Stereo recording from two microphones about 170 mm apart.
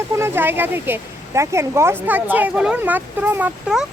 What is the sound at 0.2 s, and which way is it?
Speech, 15° right (ahead or behind).